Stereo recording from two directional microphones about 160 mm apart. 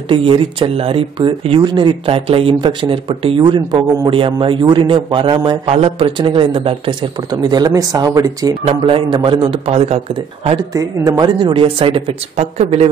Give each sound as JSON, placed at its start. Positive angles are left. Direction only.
{"t": 0.1, "sound": "a man's voice", "side_deg": -30}
{"t": 8.6, "sound": "speech", "side_deg": -30}
{"t": 10.7, "sound": "speech", "side_deg": -20}